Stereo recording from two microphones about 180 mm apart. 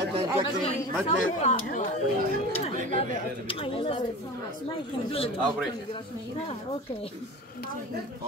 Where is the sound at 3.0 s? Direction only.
30° left (ahead or behind).